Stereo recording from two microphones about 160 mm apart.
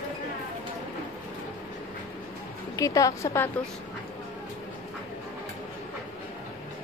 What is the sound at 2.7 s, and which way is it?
Speech, 20° left (ahead or behind).